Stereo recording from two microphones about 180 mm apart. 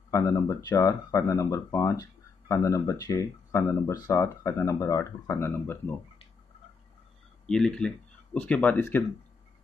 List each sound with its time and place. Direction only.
0.1 s speech: 15° left (ahead or behind)
7.4 s speech: 5° left (ahead or behind)